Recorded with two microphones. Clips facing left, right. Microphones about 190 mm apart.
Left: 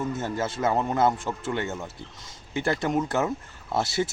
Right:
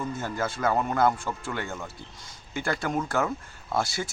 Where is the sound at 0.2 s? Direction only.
25° left (ahead or behind).